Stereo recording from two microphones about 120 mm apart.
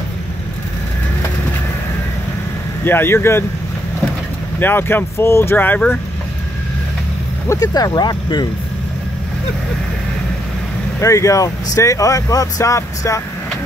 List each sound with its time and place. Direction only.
2.8 s speech: 20° left (ahead or behind)
4.6 s speech: 15° left (ahead or behind)
7.4 s speech: 35° left (ahead or behind)
11.0 s speech: 25° left (ahead or behind)